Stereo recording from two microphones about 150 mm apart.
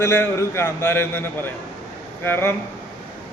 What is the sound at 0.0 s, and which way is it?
A man's voice, 15° left (ahead or behind).